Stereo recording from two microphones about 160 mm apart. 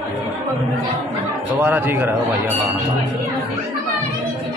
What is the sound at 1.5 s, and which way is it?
Speech, 15° right (ahead or behind).